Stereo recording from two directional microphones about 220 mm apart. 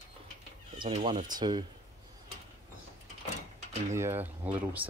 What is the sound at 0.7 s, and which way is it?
Speech, 20° right (ahead or behind).